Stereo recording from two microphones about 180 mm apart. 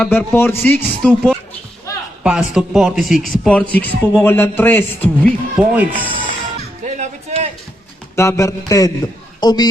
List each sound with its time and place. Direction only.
0.0 s a man's voice: 10° left (ahead or behind)
5.5 s speech: 10° right (ahead or behind)
6.8 s a sound: 40° right (ahead or behind)
8.1 s a man's voice: 15° left (ahead or behind)